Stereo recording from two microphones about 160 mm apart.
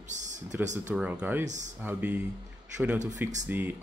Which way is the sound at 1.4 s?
50° right (ahead or behind).